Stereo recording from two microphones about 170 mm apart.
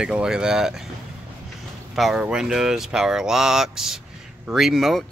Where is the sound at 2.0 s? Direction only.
5° right (ahead or behind).